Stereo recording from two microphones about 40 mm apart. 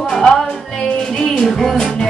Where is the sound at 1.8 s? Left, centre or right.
Centre.